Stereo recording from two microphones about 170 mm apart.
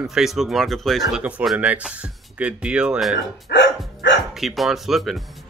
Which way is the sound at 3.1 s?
90° left.